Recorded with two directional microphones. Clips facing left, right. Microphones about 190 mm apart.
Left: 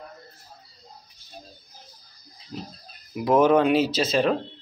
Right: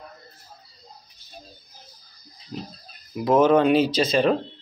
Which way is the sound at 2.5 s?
Centre (ahead or behind).